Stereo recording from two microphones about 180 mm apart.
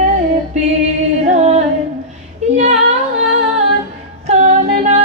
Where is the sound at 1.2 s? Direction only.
40° right (ahead or behind).